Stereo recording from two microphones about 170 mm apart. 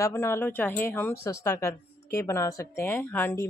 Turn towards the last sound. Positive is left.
turn(degrees=10)  # may be behind; listen again after turning